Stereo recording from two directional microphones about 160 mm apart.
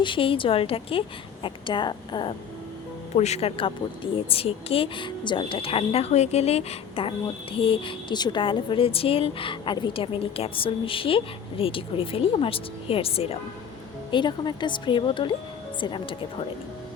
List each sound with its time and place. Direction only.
0.0 s a woman's voice: 30° left (ahead or behind)
3.2 s a woman's voice: 40° left (ahead or behind)